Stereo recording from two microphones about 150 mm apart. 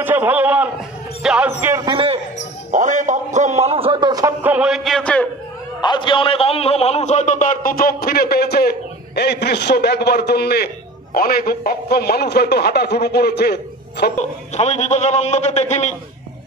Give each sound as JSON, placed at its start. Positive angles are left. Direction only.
{"t": 0.0, "sound": "a man's voice", "side_deg": -15}
{"t": 1.2, "sound": "music", "side_deg": -10}
{"t": 1.8, "sound": "a man's voice", "side_deg": -35}
{"t": 2.7, "sound": "a sound", "side_deg": -55}
{"t": 4.4, "sound": "music", "side_deg": -10}
{"t": 5.8, "sound": "a man's voice", "side_deg": 30}
{"t": 14.5, "sound": "a man's voice", "side_deg": 50}